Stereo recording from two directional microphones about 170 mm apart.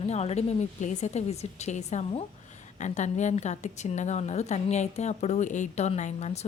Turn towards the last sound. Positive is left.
turn(degrees=40)  # may be behind; listen again after turning